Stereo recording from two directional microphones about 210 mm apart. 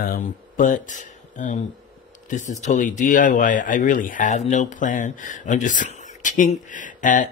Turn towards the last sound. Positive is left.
turn(degrees=35)  # may be behind; listen again after turning